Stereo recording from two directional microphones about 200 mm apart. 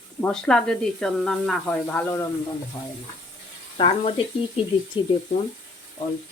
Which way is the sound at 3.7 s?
25° left (ahead or behind).